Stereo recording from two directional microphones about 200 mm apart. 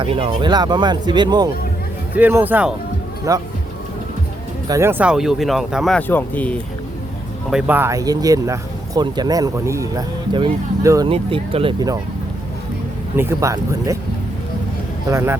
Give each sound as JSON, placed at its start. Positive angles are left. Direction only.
{"t": 0.0, "sound": "speech", "side_deg": -25}
{"t": 2.1, "sound": "speech", "side_deg": -10}
{"t": 4.7, "sound": "speech", "side_deg": -10}
{"t": 7.5, "sound": "speech", "side_deg": -10}
{"t": 13.1, "sound": "speech", "side_deg": -15}
{"t": 15.0, "sound": "speech", "side_deg": -15}